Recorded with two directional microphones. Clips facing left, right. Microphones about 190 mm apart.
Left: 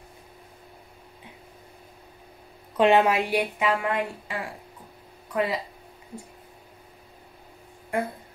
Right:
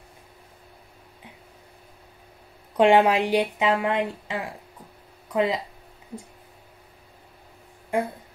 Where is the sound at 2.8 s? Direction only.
15° right (ahead or behind).